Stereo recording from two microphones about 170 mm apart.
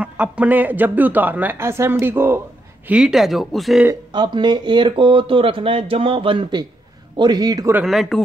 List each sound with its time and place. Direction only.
0.0 s speech: 10° right (ahead or behind)
4.1 s speech: 25° right (ahead or behind)
7.7 s speech: centre (ahead or behind)